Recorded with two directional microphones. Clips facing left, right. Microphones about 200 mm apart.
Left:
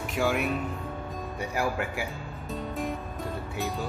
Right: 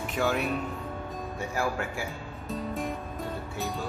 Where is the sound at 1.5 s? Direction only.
15° left (ahead or behind).